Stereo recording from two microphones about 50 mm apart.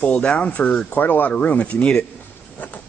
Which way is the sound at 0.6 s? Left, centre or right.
Left.